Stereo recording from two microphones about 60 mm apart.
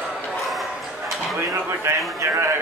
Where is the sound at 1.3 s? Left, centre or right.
Right.